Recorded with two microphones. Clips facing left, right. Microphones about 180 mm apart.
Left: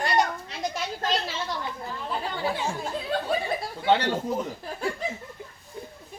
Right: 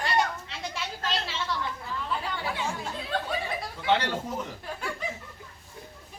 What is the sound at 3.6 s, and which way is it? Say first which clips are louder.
Speech: left 1 dB; 30° left (ahead or behind).